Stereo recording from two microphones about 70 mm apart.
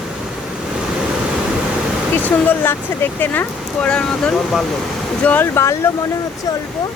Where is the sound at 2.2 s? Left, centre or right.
Left.